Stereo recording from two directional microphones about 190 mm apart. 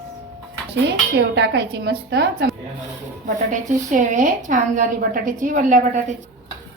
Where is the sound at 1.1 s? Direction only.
65° right (ahead or behind).